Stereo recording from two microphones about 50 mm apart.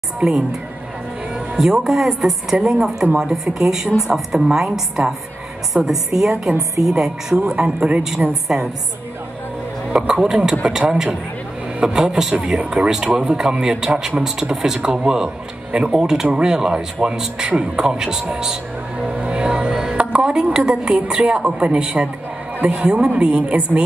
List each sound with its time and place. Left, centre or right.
0.2 s speech: centre
1.6 s speech: centre
9.9 s speech: centre
18.3 s music: centre
20.0 s a woman's voice: right